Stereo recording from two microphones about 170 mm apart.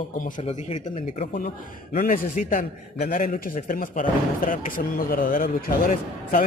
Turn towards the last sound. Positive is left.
turn(degrees=55)  # may be behind; listen again after turning